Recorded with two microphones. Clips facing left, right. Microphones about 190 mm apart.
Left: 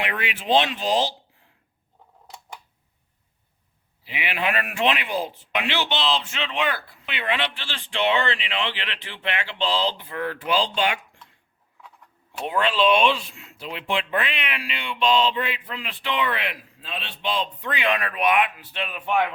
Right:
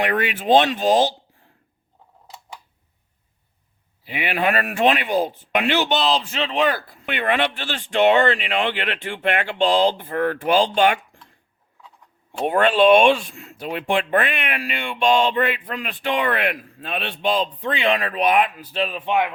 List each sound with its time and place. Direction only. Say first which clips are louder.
0.0 s a man's voice: right 7 dB; 45° right (ahead or behind)
4.0 s a man's voice: right 5 dB; 45° right (ahead or behind)
12.5 s a man's voice: right 6 dB; 55° right (ahead or behind)
17.3 s speech: right 5 dB; 35° right (ahead or behind)
19.0 s speech: even; 15° right (ahead or behind)